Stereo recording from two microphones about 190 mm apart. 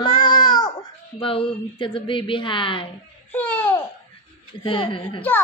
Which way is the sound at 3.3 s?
10° left (ahead or behind).